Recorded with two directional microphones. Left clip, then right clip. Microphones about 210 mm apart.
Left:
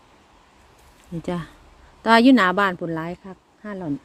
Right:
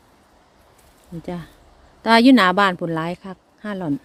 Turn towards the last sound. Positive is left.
turn(degrees=-20)  # may be behind; listen again after turning